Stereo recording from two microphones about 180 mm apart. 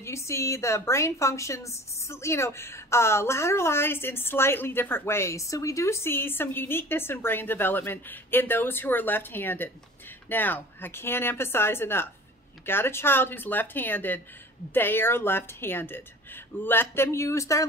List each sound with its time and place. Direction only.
0.0 s a woman's voice: 15° left (ahead or behind)